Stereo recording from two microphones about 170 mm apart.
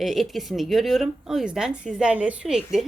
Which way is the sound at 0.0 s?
Centre (ahead or behind).